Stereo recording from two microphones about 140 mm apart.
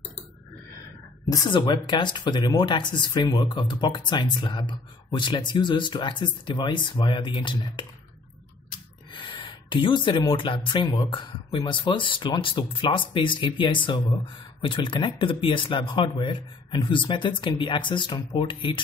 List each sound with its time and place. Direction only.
1.2 s speech: 25° left (ahead or behind)
9.2 s speech: 35° left (ahead or behind)